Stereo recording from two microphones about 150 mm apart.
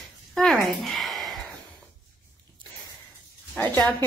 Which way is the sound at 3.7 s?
10° left (ahead or behind).